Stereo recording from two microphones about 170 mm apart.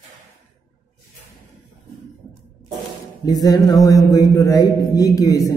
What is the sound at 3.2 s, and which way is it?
A man's voice, 20° left (ahead or behind).